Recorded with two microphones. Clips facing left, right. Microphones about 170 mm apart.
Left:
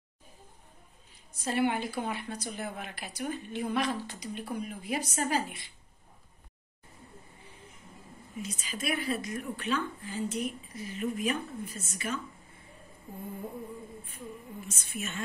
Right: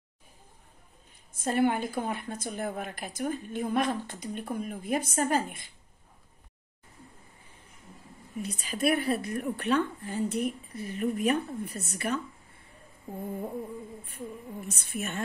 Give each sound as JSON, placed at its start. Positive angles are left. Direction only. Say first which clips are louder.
{"t": 1.3, "sound": "speech", "louder": "right 3 dB", "side_deg": -50}
{"t": 8.4, "sound": "speech", "louder": "right 6 dB", "side_deg": -60}
{"t": 14.0, "sound": "speech", "louder": "right 4 dB", "side_deg": -60}